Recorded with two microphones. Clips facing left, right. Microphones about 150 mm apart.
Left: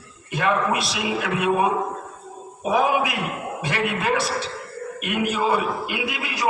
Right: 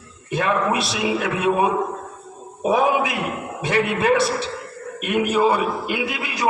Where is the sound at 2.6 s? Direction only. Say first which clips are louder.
Right 2 dB; 25° right (ahead or behind).